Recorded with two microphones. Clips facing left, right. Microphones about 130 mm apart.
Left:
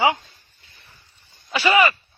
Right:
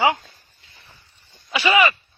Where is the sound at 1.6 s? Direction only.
35° left (ahead or behind).